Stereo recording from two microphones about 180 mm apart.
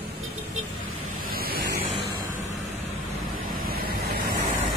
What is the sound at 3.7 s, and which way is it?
Waves, 55° right (ahead or behind).